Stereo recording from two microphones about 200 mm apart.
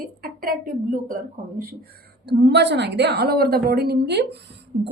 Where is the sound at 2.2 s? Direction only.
60° right (ahead or behind).